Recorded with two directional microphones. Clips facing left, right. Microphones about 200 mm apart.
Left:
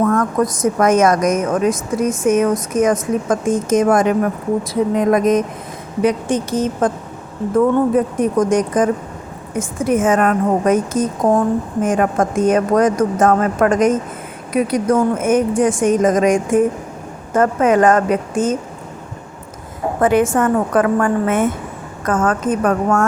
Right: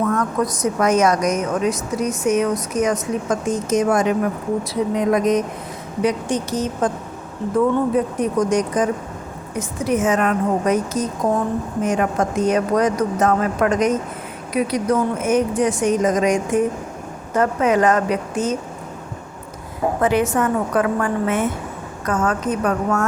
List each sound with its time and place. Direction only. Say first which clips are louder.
0.0 s a woman's voice: left 4 dB; 50° left (ahead or behind)
7.9 s a woman's voice: left 3 dB; 50° left (ahead or behind)
20.0 s a woman's voice: left 5 dB; 50° left (ahead or behind)